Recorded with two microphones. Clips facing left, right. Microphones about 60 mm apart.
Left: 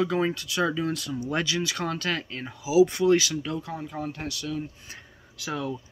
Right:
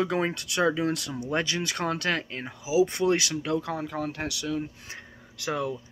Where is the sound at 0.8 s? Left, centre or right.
Right.